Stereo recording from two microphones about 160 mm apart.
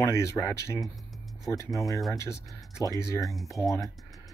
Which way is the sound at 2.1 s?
20° left (ahead or behind).